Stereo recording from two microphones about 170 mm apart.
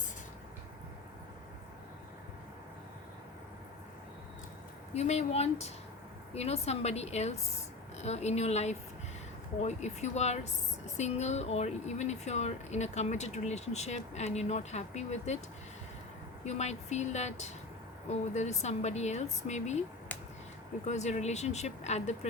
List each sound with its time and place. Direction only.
4.9 s speech: 40° left (ahead or behind)
16.4 s speech: 40° left (ahead or behind)
20.8 s speech: 40° left (ahead or behind)